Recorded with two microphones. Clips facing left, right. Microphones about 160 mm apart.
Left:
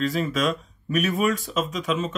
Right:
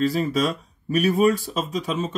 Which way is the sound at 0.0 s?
35° right (ahead or behind).